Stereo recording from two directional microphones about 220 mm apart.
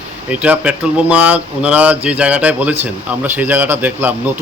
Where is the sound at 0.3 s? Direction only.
5° right (ahead or behind).